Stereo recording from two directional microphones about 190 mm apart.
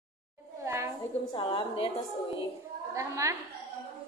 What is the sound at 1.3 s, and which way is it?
Speech, 25° left (ahead or behind).